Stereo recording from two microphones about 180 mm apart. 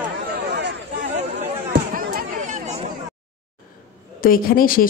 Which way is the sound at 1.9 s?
50° right (ahead or behind).